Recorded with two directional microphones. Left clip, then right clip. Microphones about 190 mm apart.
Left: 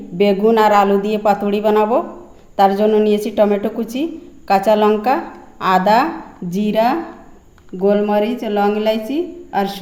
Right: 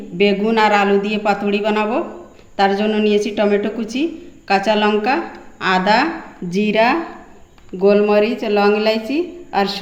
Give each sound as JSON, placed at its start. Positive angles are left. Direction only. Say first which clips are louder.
{"t": 0.2, "sound": "a woman's voice", "louder": "left 2 dB", "side_deg": 50}